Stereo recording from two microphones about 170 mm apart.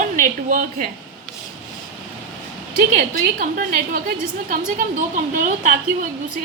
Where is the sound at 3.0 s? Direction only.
55° right (ahead or behind).